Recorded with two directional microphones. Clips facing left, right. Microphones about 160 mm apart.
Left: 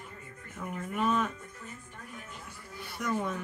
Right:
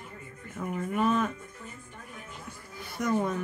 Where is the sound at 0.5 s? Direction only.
40° right (ahead or behind).